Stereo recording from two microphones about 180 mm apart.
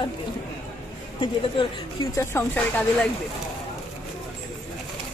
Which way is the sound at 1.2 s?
25° left (ahead or behind).